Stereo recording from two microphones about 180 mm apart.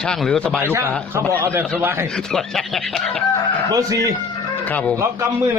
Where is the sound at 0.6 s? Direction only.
15° right (ahead or behind).